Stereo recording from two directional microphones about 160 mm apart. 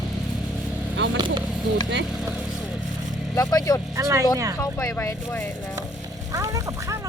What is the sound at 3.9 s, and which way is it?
Speech, 20° right (ahead or behind).